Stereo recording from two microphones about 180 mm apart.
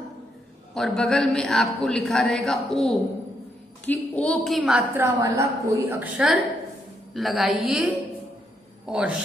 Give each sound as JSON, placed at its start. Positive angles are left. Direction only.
{"t": 0.7, "sound": "a man's voice", "side_deg": 0}
{"t": 5.0, "sound": "a woman's voice", "side_deg": -15}
{"t": 5.9, "sound": "a man's voice", "side_deg": -5}